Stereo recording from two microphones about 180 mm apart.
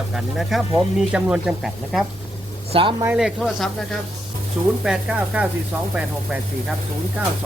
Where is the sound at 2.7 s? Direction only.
30° right (ahead or behind).